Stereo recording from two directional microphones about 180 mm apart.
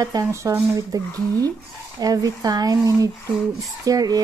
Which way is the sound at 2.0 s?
20° right (ahead or behind).